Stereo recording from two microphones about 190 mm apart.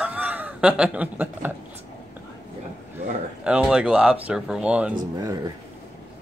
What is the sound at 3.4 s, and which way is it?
Speech, 5° right (ahead or behind).